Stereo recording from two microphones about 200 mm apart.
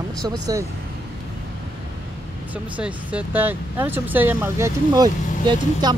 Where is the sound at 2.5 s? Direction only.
5° right (ahead or behind).